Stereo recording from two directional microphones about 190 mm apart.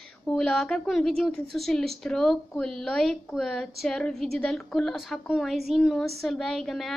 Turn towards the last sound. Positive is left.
turn(degrees=0)  # may be behind; listen again after turning